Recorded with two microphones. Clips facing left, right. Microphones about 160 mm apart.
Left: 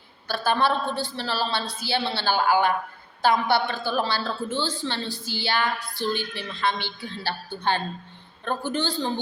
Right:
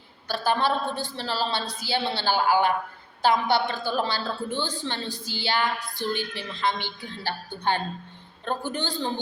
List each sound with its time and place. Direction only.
0.3 s a woman's voice: 20° right (ahead or behind)